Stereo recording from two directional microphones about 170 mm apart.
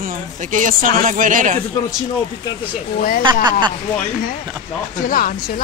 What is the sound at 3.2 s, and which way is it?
Speech, 25° right (ahead or behind).